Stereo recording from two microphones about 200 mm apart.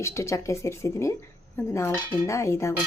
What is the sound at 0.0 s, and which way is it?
A woman's voice, 15° left (ahead or behind).